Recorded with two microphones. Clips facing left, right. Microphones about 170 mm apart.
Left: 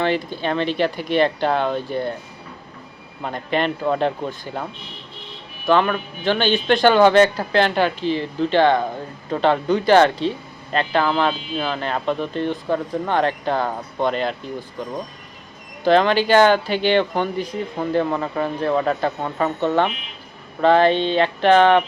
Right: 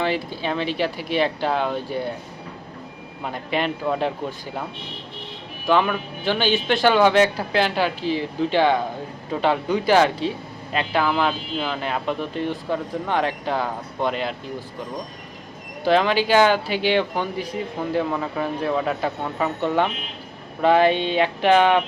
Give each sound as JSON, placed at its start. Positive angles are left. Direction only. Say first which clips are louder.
{"t": 0.0, "sound": "speech", "louder": "left 3 dB", "side_deg": -5}
{"t": 3.2, "sound": "speech", "louder": "left 3 dB", "side_deg": -5}
{"t": 5.6, "sound": "speech", "louder": "left 2 dB", "side_deg": -5}
{"t": 15.8, "sound": "speech", "louder": "left 3 dB", "side_deg": -5}